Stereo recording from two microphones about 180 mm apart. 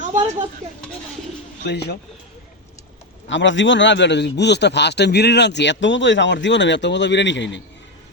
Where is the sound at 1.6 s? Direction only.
65° left (ahead or behind).